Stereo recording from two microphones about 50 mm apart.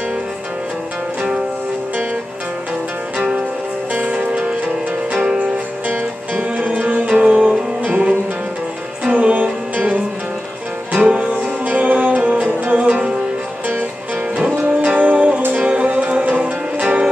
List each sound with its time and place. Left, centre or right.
3.9 s music: right
5.9 s music: right
7.9 s music: right
11.1 s music: right
14.4 s music: right